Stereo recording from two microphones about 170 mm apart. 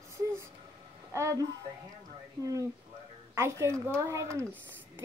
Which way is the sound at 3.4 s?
15° right (ahead or behind).